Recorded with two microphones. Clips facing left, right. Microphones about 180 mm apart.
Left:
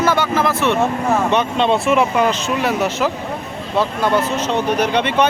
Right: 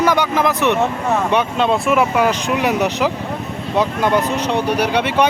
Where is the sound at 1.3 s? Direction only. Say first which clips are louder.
Even; 5° right (ahead or behind).